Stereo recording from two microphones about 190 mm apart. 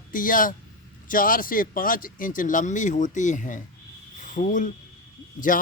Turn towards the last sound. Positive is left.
turn(degrees=45)  # may be behind; listen again after turning